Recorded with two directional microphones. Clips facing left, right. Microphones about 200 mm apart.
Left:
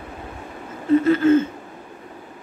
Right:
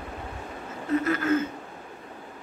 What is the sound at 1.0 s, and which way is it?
Speech, 25° left (ahead or behind).